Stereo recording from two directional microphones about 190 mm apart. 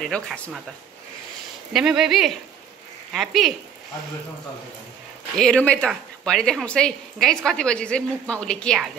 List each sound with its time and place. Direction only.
0.0 s speech: centre (ahead or behind)
1.7 s speech: centre (ahead or behind)
5.3 s speech: 5° left (ahead or behind)